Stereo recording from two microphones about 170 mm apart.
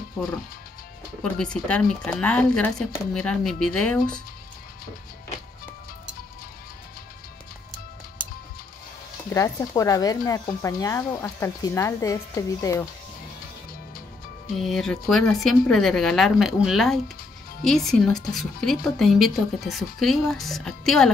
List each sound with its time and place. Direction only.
1.2 s a woman's voice: 5° left (ahead or behind)
9.3 s speech: 20° left (ahead or behind)
14.6 s a woman's voice: centre (ahead or behind)